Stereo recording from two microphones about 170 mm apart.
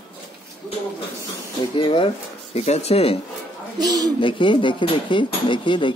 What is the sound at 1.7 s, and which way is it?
Speech, 30° left (ahead or behind).